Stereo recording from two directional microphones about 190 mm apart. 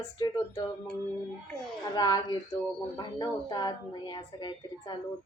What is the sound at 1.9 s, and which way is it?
A woman's voice, 20° left (ahead or behind).